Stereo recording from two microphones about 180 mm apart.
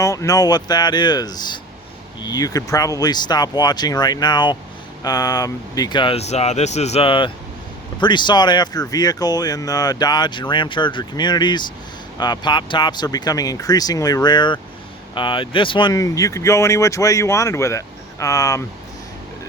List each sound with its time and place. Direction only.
0.0 s speech: 20° left (ahead or behind)